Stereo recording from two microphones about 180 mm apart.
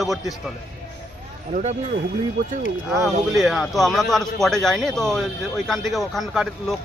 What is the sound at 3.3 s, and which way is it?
A man's voice, centre (ahead or behind).